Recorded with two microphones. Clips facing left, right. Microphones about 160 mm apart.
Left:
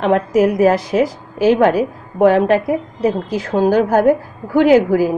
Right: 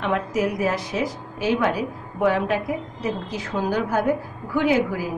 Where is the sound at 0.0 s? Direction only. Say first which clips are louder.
Left 9 dB; 60° left (ahead or behind); by 1.7 s 90° left.